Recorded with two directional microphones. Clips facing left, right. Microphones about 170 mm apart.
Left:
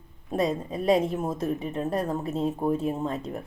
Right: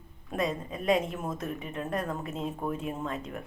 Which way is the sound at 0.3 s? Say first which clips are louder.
Left 5 dB; 35° left (ahead or behind).